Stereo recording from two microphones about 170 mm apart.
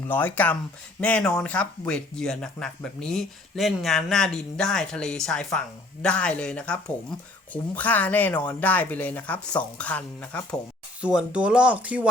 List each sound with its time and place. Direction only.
0.1 s speech: 10° left (ahead or behind)
11.0 s speech: 5° right (ahead or behind)